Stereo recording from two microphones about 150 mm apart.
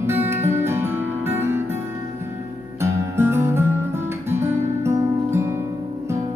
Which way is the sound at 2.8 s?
15° right (ahead or behind).